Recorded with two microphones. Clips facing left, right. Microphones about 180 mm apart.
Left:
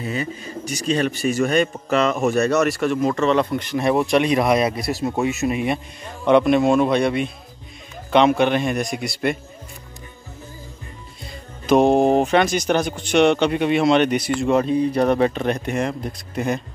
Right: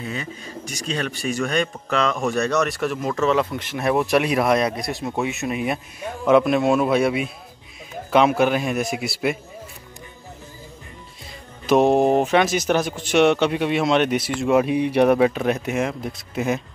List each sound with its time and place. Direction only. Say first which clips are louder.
0.0 s speech: left 4 dB; 5° left (ahead or behind)
11.6 s speech: left 1 dB; centre (ahead or behind)